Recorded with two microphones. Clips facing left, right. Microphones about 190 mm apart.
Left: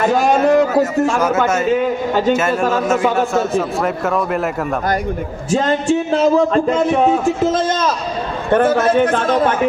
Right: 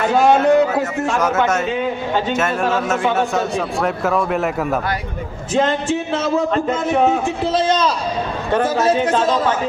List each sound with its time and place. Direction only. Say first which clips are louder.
0.0 s a sound: even; 40° left (ahead or behind)
1.1 s a man's voice: left 1 dB; centre (ahead or behind)
1.7 s a man's voice: left 4 dB; 40° left (ahead or behind)
2.9 s a man's voice: left 3 dB; centre (ahead or behind)
6.1 s a man's voice: left 5 dB; 35° left (ahead or behind); by 9.6 s 55° left (ahead or behind)